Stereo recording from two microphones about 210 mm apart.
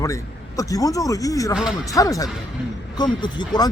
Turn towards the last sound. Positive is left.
turn(degrees=20)  # may be behind; listen again after turning